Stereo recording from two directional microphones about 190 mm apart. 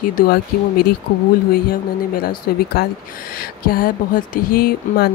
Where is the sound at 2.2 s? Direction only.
55° left (ahead or behind).